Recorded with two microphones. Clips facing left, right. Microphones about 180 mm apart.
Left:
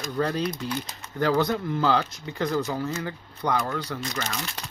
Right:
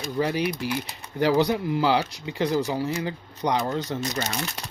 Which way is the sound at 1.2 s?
15° right (ahead or behind).